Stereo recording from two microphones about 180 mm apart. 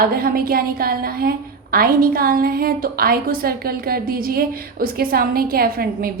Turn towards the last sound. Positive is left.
turn(degrees=-55)  # may be behind; listen again after turning